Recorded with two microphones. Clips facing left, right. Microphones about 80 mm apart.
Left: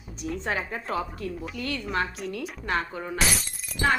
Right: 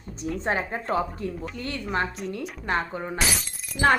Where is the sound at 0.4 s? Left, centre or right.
Right.